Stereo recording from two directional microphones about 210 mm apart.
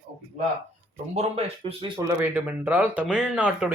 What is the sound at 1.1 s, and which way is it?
Speech, 30° right (ahead or behind).